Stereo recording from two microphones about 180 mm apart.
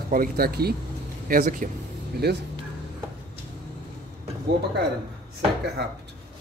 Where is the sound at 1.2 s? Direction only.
50° right (ahead or behind).